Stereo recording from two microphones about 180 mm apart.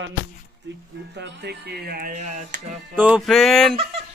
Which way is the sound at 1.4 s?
65° right (ahead or behind).